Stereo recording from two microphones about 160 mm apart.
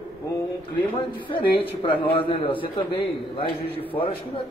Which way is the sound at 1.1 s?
30° left (ahead or behind).